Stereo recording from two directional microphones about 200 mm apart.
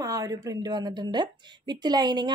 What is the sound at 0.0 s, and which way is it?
A woman's voice, 15° right (ahead or behind).